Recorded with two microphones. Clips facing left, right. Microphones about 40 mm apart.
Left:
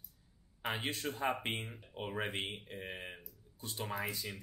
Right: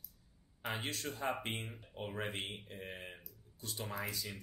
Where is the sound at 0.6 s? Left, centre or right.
Left.